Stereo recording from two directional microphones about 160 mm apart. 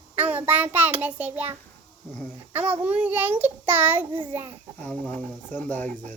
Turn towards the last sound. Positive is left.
turn(degrees=10)  # may be behind; listen again after turning